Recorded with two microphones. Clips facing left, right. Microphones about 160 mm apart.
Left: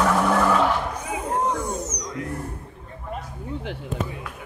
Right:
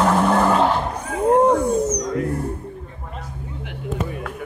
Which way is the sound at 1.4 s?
55° right (ahead or behind).